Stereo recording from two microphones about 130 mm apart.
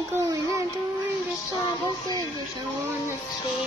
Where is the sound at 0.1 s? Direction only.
25° right (ahead or behind).